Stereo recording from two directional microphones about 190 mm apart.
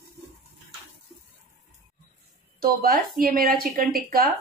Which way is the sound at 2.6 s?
50° right (ahead or behind).